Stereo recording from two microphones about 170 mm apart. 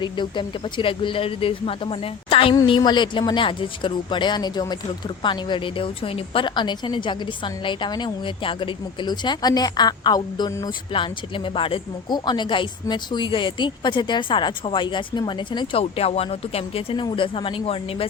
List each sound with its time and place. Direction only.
0.0 s speech: 30° left (ahead or behind)